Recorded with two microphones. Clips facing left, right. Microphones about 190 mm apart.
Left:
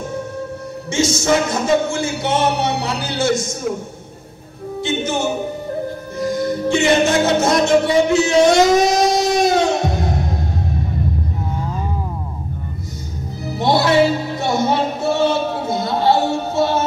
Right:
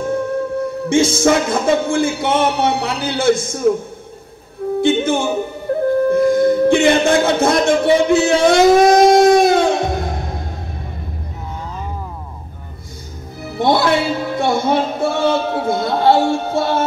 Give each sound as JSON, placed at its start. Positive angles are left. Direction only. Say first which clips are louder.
{"t": 0.1, "sound": "music", "louder": "right 7 dB", "side_deg": -55}
{"t": 4.8, "sound": "music", "louder": "right 4 dB", "side_deg": -55}
{"t": 6.0, "sound": "a sound", "louder": "right 7 dB", "side_deg": -55}
{"t": 13.6, "sound": "music", "louder": "left 1 dB", "side_deg": -55}